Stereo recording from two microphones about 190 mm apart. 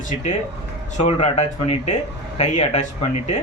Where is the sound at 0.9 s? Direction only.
35° left (ahead or behind).